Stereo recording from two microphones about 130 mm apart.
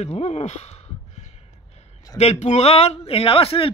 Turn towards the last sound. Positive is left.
turn(degrees=45)  # may be behind; listen again after turning